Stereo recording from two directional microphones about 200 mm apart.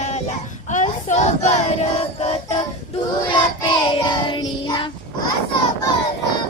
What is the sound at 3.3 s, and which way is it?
Child singing, 25° left (ahead or behind).